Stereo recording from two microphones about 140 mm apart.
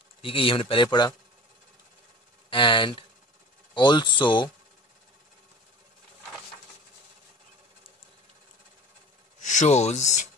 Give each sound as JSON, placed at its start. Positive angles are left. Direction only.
{"t": 0.2, "sound": "a man's voice", "side_deg": 40}
{"t": 2.5, "sound": "a man's voice", "side_deg": 35}
{"t": 9.4, "sound": "speech", "side_deg": 55}